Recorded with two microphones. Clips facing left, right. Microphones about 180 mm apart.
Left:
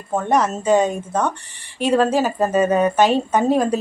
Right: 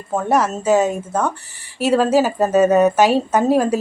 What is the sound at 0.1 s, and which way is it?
A woman's voice, 5° right (ahead or behind).